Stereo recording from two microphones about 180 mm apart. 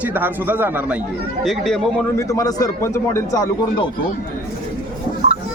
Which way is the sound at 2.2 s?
20° left (ahead or behind).